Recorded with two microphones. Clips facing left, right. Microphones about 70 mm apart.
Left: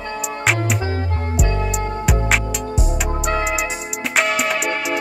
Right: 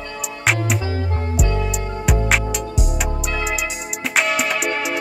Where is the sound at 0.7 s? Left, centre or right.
Left.